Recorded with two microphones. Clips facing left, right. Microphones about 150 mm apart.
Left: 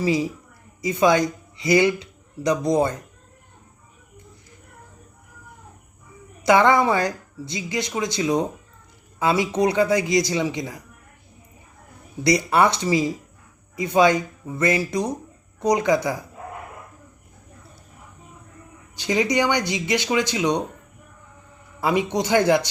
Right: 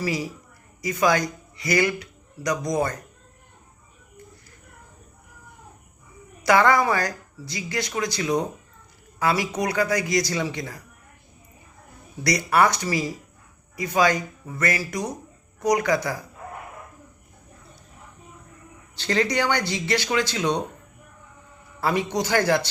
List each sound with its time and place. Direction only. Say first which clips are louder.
0.0 s speech: left 5 dB; 20° left (ahead or behind)
6.4 s speech: left 2 dB; 20° left (ahead or behind)
12.2 s speech: left 2 dB; 25° left (ahead or behind)
18.9 s speech: left 2 dB; 15° left (ahead or behind)
21.8 s speech: left 2 dB; 15° left (ahead or behind)